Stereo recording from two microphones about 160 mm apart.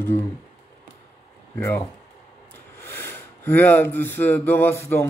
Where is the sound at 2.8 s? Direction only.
15° left (ahead or behind).